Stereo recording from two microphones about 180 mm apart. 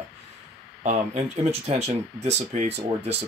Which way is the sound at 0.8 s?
40° right (ahead or behind).